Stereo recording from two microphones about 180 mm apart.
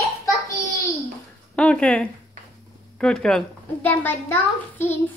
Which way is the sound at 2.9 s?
5° left (ahead or behind).